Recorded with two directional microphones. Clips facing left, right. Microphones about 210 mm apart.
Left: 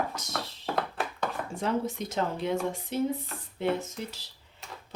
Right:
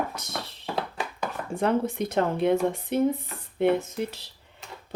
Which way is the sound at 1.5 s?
60° right (ahead or behind).